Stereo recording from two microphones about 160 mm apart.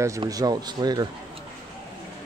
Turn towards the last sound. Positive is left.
turn(degrees=-25)  # may be behind; listen again after turning